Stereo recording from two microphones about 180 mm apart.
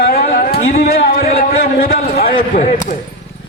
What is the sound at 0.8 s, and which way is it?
A man's voice, 60° left (ahead or behind).